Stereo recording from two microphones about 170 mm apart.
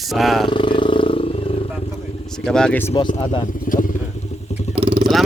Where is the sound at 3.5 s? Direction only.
55° left (ahead or behind).